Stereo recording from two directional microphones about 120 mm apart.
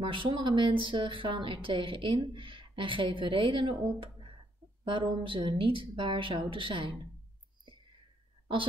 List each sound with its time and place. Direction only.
0.0 s a woman's voice: 45° right (ahead or behind)